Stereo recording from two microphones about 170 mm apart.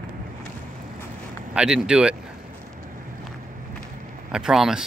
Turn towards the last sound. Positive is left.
turn(degrees=-5)  # may be behind; listen again after turning